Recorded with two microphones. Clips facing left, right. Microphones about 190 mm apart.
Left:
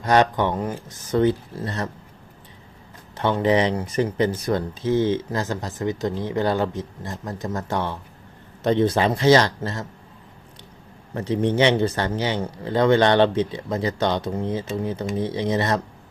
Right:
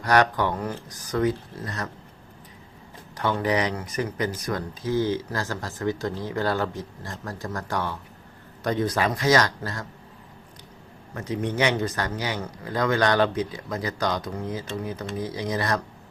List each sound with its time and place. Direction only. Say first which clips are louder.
0.0 s speech: left 3 dB; 20° left (ahead or behind)
3.2 s speech: left 5 dB; 25° left (ahead or behind)
11.1 s speech: left 6 dB; 30° left (ahead or behind)